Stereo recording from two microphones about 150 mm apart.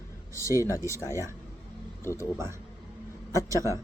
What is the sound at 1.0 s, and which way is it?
Speech, 20° right (ahead or behind).